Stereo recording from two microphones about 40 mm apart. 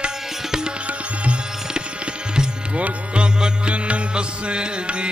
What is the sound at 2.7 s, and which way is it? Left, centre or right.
Music, right.